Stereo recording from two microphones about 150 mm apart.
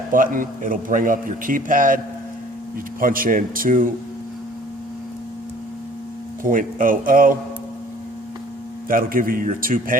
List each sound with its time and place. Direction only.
0.1 s a man's voice: 65° right (ahead or behind)
3.0 s a man's voice: 70° right (ahead or behind)
6.4 s a man's voice: 65° right (ahead or behind)
8.9 s a man's voice: 70° right (ahead or behind)